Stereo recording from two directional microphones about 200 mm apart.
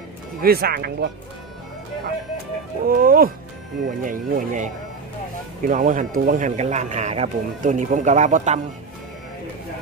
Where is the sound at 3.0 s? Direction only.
45° right (ahead or behind).